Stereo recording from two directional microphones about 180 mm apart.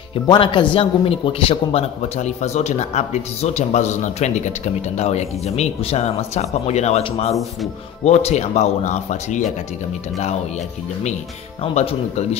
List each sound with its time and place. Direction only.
0.1 s a man's voice: 30° left (ahead or behind)
11.6 s a man's voice: 35° left (ahead or behind)